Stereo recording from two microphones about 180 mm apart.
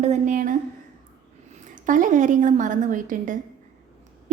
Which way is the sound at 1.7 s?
45° right (ahead or behind).